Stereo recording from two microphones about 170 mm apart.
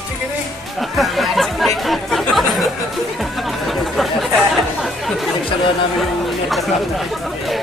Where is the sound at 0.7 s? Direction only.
Centre (ahead or behind).